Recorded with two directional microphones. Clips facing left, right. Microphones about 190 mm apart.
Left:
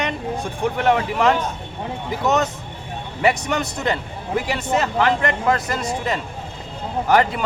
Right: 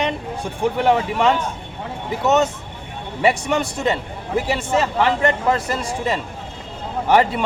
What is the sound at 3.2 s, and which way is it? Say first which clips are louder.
Speech: right 2 dB; 30° right (ahead or behind).